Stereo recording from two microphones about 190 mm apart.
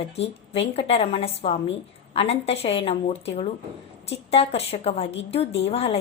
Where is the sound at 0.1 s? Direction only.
35° left (ahead or behind).